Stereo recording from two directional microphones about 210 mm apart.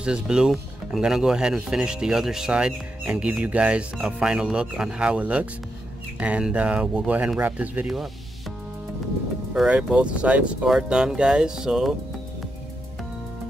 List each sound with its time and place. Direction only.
0.0 s speech: 5° right (ahead or behind)